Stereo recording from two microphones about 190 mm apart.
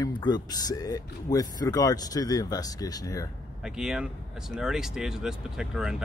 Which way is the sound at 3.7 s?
5° right (ahead or behind).